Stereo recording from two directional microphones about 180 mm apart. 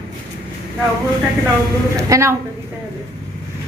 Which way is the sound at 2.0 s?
15° right (ahead or behind).